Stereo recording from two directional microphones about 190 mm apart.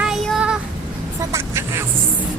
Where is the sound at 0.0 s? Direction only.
5° right (ahead or behind).